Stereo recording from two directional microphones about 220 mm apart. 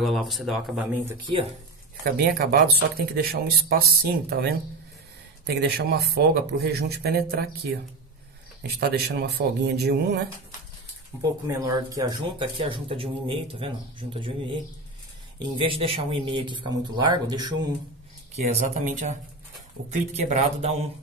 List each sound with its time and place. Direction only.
0.0 s speech: centre (ahead or behind)
2.0 s speech: 45° right (ahead or behind)
5.6 s speech: 45° right (ahead or behind)
8.6 s speech: 45° right (ahead or behind)
11.4 s speech: 15° right (ahead or behind)
18.3 s speech: 30° right (ahead or behind)